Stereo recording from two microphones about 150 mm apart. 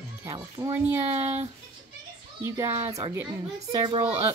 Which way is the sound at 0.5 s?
15° right (ahead or behind).